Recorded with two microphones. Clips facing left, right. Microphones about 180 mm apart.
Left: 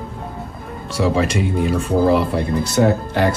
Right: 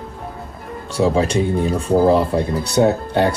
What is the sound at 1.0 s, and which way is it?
Speech, 30° right (ahead or behind).